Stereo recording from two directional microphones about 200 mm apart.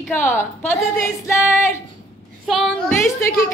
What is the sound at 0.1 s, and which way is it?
Speech, 10° left (ahead or behind).